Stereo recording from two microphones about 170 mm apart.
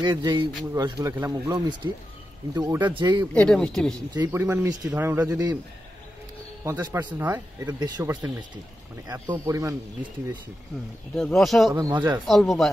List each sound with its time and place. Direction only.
0.2 s speech: 25° right (ahead or behind)
3.3 s speech: 5° left (ahead or behind)
4.1 s a man's voice: 20° right (ahead or behind)
6.6 s a man's voice: 15° right (ahead or behind)
11.1 s speech: 5° left (ahead or behind)
11.7 s speech: 25° right (ahead or behind)
12.3 s speech: centre (ahead or behind)